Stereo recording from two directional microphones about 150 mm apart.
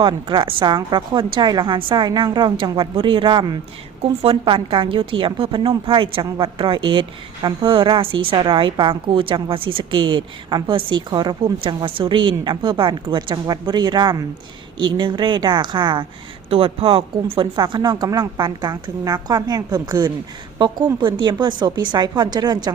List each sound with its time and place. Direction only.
0.0 s a woman's voice: 30° right (ahead or behind)